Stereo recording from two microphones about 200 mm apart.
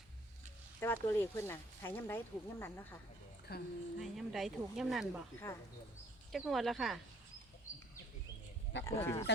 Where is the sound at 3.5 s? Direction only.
55° left (ahead or behind).